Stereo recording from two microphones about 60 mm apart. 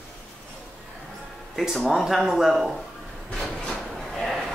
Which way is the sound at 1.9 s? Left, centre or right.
Centre.